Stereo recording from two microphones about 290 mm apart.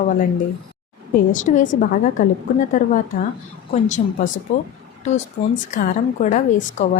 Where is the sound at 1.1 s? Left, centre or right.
Left.